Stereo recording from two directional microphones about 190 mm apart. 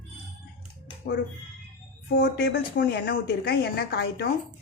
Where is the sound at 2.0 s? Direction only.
55° left (ahead or behind).